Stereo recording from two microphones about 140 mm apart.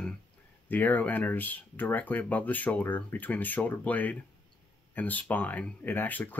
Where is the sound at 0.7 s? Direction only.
10° left (ahead or behind).